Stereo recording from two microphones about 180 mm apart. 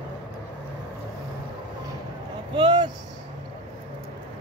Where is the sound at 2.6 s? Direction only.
25° right (ahead or behind).